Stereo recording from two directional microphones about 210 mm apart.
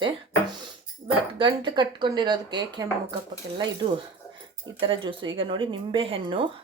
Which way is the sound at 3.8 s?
25° right (ahead or behind).